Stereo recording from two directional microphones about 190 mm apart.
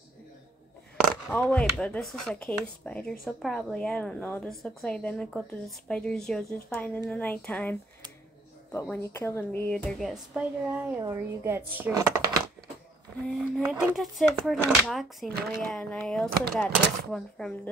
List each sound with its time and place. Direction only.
1.3 s a woman's voice: 5° left (ahead or behind)
8.8 s a woman's voice: 10° left (ahead or behind); by 12.2 s 15° right (ahead or behind)
13.3 s speech: centre (ahead or behind)